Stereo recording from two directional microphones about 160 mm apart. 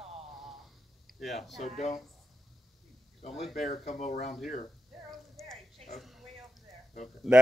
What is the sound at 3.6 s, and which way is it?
Speech, 45° left (ahead or behind).